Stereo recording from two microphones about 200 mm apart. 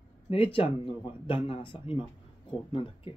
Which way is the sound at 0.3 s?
25° left (ahead or behind).